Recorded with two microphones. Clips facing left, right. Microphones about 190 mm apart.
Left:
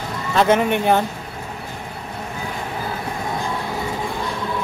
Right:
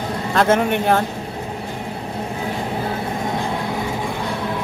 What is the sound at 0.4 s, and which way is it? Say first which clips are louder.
Speech: even; 5° left (ahead or behind).